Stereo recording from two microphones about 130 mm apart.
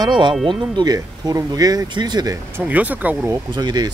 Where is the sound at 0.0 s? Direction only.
35° right (ahead or behind).